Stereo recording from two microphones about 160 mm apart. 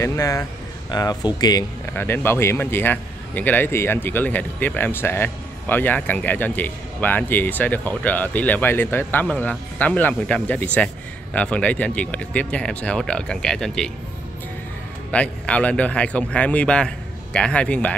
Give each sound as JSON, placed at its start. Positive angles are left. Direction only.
{"t": 0.0, "sound": "speech", "side_deg": 20}
{"t": 2.0, "sound": "a man's voice", "side_deg": 15}
{"t": 15.0, "sound": "a man's voice", "side_deg": 10}